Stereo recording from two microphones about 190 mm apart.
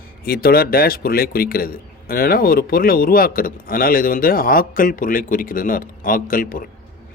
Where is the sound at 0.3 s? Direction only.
50° left (ahead or behind).